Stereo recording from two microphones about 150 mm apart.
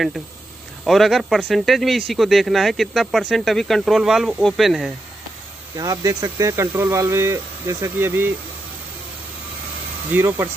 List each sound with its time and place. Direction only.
0.8 s speech: centre (ahead or behind)
5.8 s speech: 20° right (ahead or behind)
10.1 s speech: 15° right (ahead or behind)